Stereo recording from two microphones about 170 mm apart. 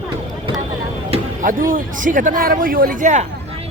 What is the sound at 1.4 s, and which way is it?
A man's voice, 55° right (ahead or behind).